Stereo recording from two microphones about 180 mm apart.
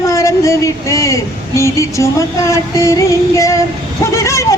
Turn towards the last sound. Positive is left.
turn(degrees=15)  # may be behind; listen again after turning